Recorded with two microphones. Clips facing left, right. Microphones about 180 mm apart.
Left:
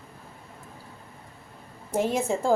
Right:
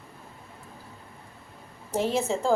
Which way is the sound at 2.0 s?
15° left (ahead or behind).